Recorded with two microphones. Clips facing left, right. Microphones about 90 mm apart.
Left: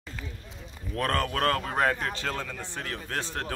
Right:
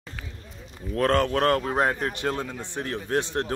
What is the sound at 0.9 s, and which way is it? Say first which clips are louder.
Speech: right 6 dB; 25° right (ahead or behind).